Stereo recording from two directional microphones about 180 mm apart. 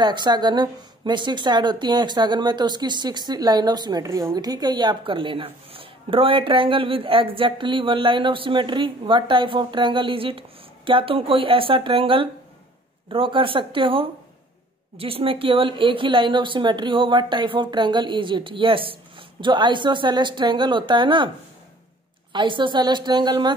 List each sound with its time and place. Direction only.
0.0 s speech: 25° right (ahead or behind)
22.3 s speech: 25° right (ahead or behind)